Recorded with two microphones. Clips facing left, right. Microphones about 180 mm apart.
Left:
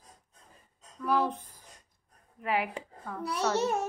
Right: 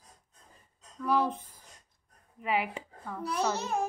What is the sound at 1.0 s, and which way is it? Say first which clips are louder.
Speech: even; centre (ahead or behind).